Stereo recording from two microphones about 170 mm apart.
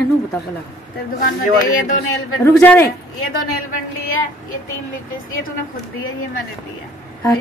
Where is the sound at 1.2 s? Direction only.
65° left (ahead or behind).